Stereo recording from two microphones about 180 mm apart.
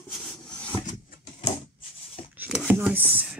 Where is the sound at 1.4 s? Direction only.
30° left (ahead or behind).